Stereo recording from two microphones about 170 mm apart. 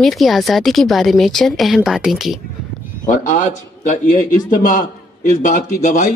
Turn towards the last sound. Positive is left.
turn(degrees=45)  # may be behind; listen again after turning